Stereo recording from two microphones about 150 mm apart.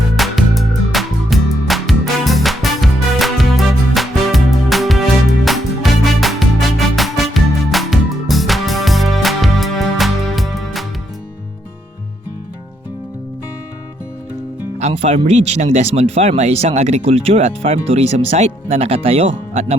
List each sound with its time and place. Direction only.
0.2 s music: centre (ahead or behind)
14.8 s speech: 45° right (ahead or behind)